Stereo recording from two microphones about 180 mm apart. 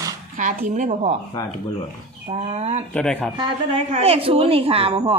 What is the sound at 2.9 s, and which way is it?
Speech, 5° left (ahead or behind).